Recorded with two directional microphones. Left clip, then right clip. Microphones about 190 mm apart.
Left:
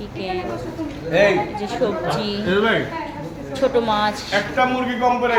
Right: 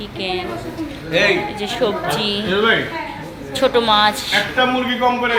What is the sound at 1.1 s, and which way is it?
Speech, 55° left (ahead or behind).